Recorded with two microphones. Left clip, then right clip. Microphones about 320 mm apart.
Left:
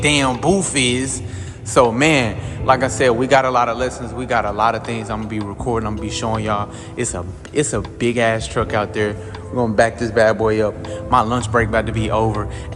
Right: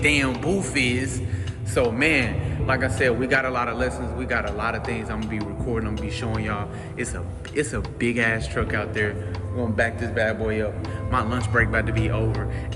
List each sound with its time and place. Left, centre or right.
0.0 s a man's voice: centre